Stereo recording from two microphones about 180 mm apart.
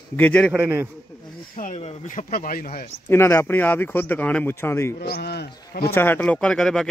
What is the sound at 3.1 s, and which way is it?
Speech, 15° left (ahead or behind).